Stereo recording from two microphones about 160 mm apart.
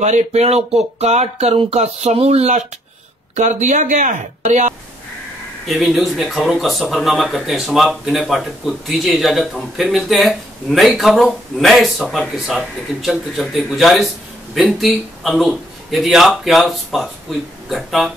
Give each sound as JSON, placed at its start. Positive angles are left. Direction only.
{"t": 0.0, "sound": "speech", "side_deg": -45}
{"t": 5.7, "sound": "speech", "side_deg": 0}